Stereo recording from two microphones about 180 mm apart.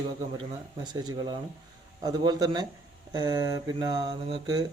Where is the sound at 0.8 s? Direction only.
25° right (ahead or behind).